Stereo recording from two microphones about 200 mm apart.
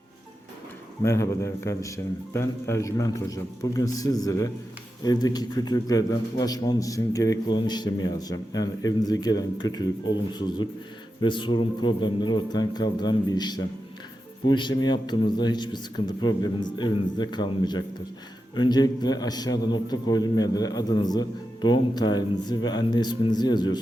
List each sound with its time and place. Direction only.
1.0 s a man's voice: 15° left (ahead or behind)